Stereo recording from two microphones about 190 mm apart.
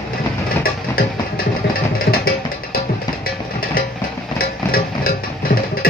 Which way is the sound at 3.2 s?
50° left (ahead or behind).